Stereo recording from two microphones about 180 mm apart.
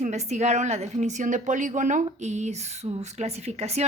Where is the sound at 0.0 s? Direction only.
40° right (ahead or behind).